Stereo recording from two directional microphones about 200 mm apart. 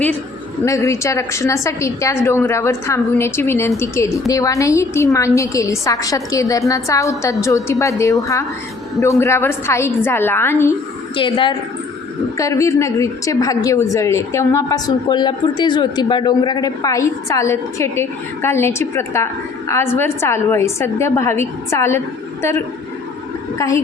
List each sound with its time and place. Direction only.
0.6 s a woman's voice: 15° left (ahead or behind)
11.2 s a woman's voice: 25° left (ahead or behind)
23.6 s a woman's voice: 15° left (ahead or behind)